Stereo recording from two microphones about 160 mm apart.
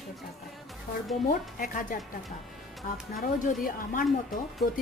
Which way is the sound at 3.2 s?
55° left (ahead or behind).